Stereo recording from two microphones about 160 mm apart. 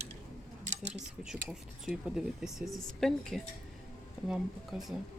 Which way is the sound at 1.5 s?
5° right (ahead or behind).